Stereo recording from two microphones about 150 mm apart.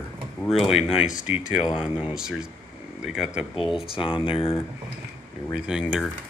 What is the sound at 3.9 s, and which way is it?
Speech, 35° left (ahead or behind).